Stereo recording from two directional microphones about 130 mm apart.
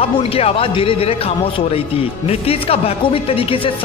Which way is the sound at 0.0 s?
50° left (ahead or behind).